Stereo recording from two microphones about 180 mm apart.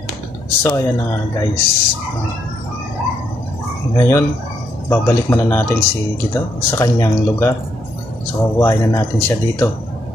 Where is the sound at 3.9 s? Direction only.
15° left (ahead or behind).